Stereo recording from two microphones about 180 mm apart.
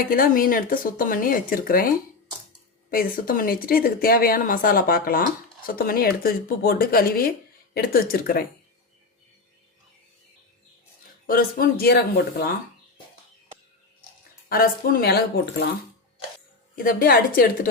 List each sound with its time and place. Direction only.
0.0 s speech: 55° left (ahead or behind)
2.9 s speech: 50° left (ahead or behind)
11.3 s speech: 55° left (ahead or behind)
14.5 s speech: 55° left (ahead or behind)
16.7 s speech: 50° left (ahead or behind)